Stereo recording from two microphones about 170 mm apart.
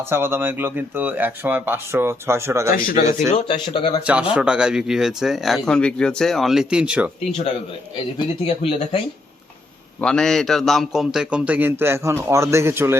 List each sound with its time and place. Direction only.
0.0 s a man's voice: 15° right (ahead or behind)
2.7 s speech: 50° left (ahead or behind)
3.5 s speech: 25° left (ahead or behind)
4.0 s a man's voice: 5° right (ahead or behind)
8.4 s speech: 35° left (ahead or behind)
10.0 s a man's voice: 5° left (ahead or behind); by 13.0 s 15° right (ahead or behind)